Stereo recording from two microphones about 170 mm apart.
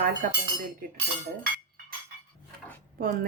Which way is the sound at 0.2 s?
50° right (ahead or behind).